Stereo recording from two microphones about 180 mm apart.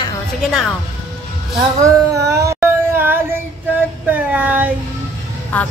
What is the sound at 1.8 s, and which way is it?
Child singing, 15° right (ahead or behind).